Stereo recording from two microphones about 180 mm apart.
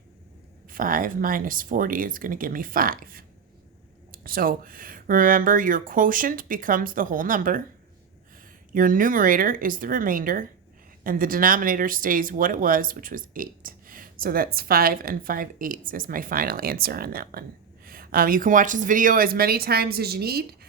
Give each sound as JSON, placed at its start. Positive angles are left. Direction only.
{"t": 0.7, "sound": "speech", "side_deg": -50}
{"t": 8.7, "sound": "speech", "side_deg": -50}